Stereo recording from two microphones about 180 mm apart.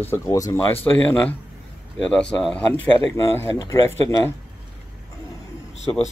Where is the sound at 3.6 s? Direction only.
20° left (ahead or behind).